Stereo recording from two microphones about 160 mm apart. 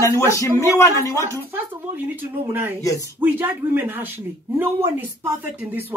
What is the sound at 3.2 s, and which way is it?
Speech, 10° right (ahead or behind).